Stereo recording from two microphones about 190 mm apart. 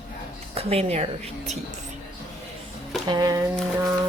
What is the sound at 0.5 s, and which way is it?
Speech, 30° right (ahead or behind).